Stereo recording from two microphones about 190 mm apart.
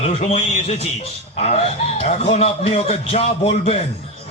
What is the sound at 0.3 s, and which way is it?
A man's voice, 30° left (ahead or behind).